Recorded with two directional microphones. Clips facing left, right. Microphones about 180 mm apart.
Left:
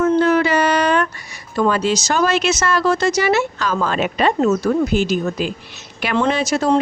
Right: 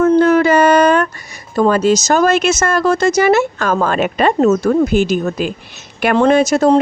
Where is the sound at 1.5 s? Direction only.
45° right (ahead or behind).